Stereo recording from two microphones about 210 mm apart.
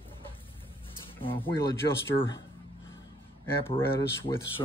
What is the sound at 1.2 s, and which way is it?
Speech, 25° left (ahead or behind).